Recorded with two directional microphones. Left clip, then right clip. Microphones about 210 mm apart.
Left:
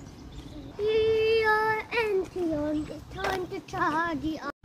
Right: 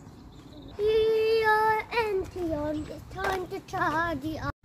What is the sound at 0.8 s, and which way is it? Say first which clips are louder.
Child singing: right 1 dB; 35° right (ahead or behind).